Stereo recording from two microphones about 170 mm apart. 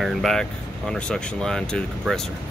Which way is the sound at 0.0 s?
Centre (ahead or behind).